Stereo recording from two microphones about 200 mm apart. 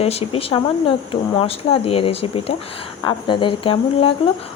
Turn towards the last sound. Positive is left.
turn(degrees=25)  # may be behind; listen again after turning